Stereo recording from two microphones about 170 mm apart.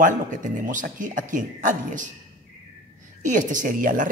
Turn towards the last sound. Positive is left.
turn(degrees=-50)  # may be behind; listen again after turning